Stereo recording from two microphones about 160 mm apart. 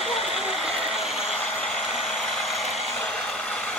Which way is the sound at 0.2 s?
Centre (ahead or behind).